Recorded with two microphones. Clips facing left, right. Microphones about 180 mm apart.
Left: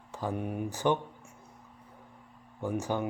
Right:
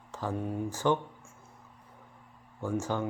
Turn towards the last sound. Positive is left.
turn(degrees=15)  # may be behind; listen again after turning